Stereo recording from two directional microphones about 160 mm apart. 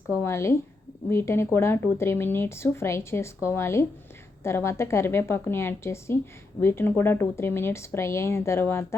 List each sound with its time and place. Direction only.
0.3 s speech: 15° left (ahead or behind)